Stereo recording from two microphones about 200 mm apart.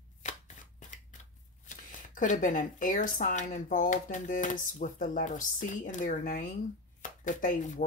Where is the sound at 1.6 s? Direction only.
40° left (ahead or behind).